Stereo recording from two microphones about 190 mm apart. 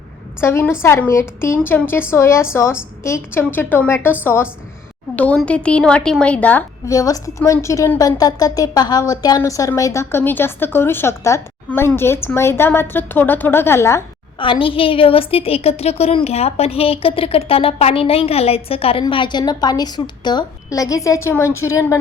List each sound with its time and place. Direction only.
0.4 s a woman's voice: 10° left (ahead or behind)
14.3 s a woman's voice: 25° left (ahead or behind)